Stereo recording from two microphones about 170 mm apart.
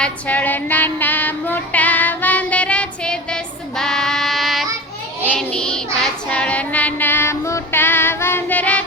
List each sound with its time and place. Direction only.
0.0 s female singing: 10° left (ahead or behind)
5.2 s child singing: 5° left (ahead or behind)